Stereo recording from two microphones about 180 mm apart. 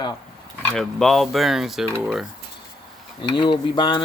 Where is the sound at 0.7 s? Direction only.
Centre (ahead or behind).